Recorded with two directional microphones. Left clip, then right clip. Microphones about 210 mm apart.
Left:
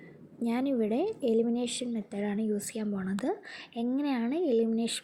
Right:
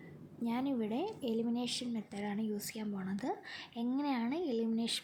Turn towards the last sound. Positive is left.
turn(degrees=10)  # may be behind; listen again after turning